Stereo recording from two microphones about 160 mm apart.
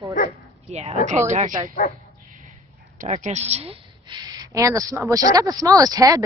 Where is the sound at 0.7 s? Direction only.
45° right (ahead or behind).